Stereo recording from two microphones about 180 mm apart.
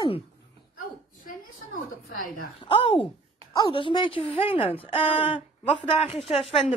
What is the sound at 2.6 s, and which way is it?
A woman's voice, 30° left (ahead or behind).